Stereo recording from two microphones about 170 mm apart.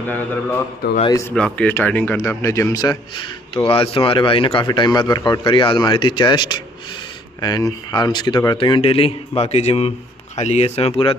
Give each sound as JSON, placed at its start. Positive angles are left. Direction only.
{"t": 0.0, "sound": "mantra", "side_deg": 10}
{"t": 0.8, "sound": "a man's voice", "side_deg": 70}
{"t": 1.3, "sound": "speech", "side_deg": 5}